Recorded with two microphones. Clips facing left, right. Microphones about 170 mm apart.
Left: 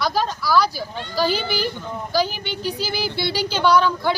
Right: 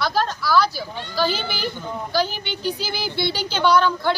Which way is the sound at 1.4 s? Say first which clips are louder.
Left 3 dB; 40° left (ahead or behind).